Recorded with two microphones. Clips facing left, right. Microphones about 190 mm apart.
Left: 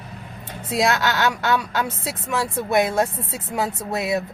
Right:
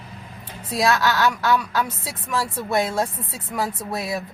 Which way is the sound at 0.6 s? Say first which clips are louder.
Even; 25° left (ahead or behind).